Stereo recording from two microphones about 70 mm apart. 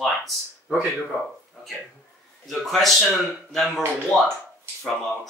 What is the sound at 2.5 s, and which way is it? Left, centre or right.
Speech, centre.